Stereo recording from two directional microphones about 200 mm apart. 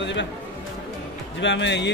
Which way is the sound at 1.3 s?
65° left (ahead or behind).